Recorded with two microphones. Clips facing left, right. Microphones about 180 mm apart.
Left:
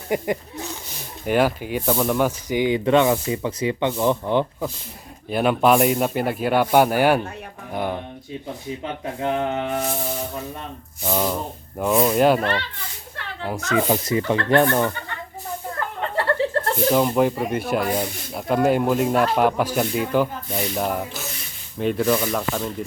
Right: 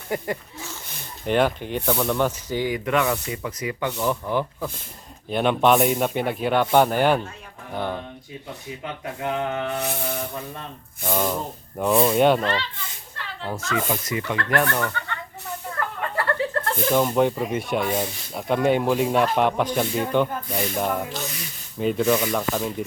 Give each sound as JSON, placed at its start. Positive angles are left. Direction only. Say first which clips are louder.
{"t": 0.1, "sound": "speech", "louder": "left 4 dB", "side_deg": 15}
{"t": 1.2, "sound": "speech", "louder": "left 1 dB", "side_deg": 5}
{"t": 5.3, "sound": "speech", "louder": "left 1 dB", "side_deg": 5}
{"t": 9.2, "sound": "speech", "louder": "left 3 dB", "side_deg": 25}
{"t": 11.0, "sound": "speech", "louder": "left 1 dB", "side_deg": 5}
{"t": 13.8, "sound": "speech", "louder": "left 6 dB", "side_deg": 30}
{"t": 16.0, "sound": "chuckle", "louder": "left 4 dB", "side_deg": 30}
{"t": 16.7, "sound": "speech", "louder": "left 1 dB", "side_deg": 5}